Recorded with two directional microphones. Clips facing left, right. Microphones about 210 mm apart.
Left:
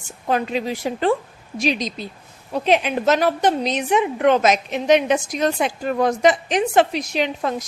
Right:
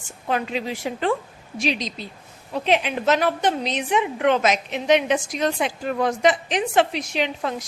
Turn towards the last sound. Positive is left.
turn(degrees=40)  # may be behind; listen again after turning